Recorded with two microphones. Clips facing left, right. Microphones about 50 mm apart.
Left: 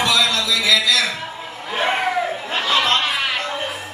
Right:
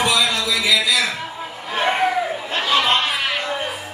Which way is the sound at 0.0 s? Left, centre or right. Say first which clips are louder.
Even; centre.